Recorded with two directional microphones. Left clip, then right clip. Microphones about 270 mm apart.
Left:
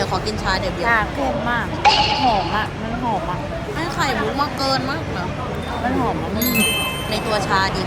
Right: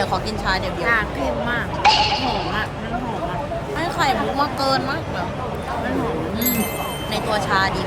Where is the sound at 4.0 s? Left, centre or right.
Centre.